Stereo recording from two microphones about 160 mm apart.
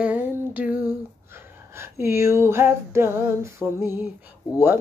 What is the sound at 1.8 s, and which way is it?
Speech, 15° right (ahead or behind).